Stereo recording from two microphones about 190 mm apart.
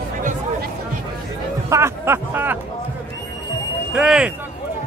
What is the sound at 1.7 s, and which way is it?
Speech, 15° right (ahead or behind).